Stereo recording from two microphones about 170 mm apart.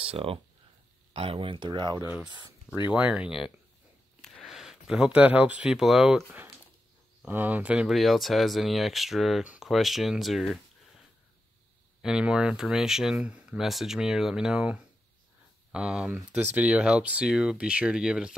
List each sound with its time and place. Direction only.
0.0 s speech: 35° right (ahead or behind)
2.9 s speech: 5° right (ahead or behind)
12.0 s speech: 5° right (ahead or behind)